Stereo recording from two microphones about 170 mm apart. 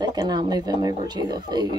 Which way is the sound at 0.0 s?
25° right (ahead or behind).